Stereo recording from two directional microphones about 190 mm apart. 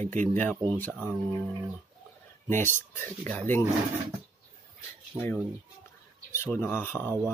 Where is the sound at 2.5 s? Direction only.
10° left (ahead or behind).